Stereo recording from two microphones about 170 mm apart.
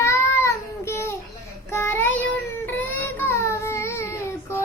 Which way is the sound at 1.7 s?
15° left (ahead or behind).